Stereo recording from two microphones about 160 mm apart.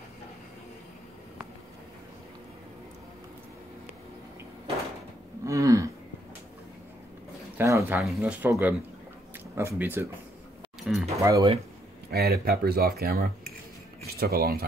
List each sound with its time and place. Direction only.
5.4 s a sound: 20° right (ahead or behind)
7.5 s speech: 15° right (ahead or behind)
10.8 s music: 5° right (ahead or behind)
11.1 s speech: 20° right (ahead or behind)
12.1 s speech: 80° right